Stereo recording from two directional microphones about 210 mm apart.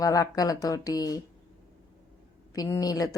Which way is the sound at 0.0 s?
15° left (ahead or behind).